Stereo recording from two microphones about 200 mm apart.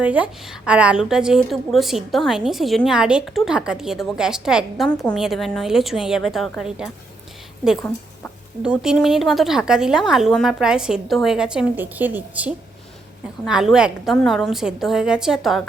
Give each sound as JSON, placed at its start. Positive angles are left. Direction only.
{"t": 0.0, "sound": "a woman's voice", "side_deg": -5}
{"t": 7.8, "sound": "a woman's voice", "side_deg": 10}
{"t": 8.6, "sound": "a woman's voice", "side_deg": -5}